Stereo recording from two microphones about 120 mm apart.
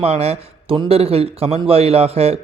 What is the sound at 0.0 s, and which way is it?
A man's voice, 60° right (ahead or behind).